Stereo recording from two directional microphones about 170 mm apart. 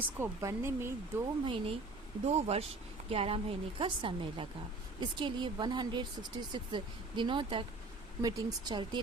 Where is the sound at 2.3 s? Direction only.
40° right (ahead or behind).